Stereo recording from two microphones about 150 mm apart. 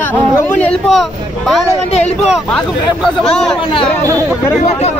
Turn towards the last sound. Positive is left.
turn(degrees=5)  # may be behind; listen again after turning